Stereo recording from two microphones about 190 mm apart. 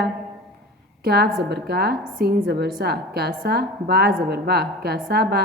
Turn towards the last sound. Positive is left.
turn(degrees=-55)  # may be behind; listen again after turning